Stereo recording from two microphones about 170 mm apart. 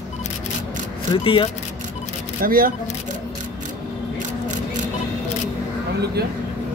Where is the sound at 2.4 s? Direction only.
55° right (ahead or behind).